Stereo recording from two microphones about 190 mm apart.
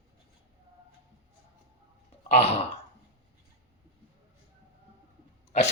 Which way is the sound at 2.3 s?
35° left (ahead or behind).